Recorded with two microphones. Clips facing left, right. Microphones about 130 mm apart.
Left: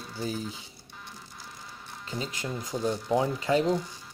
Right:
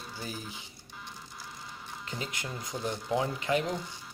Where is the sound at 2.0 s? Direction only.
30° left (ahead or behind).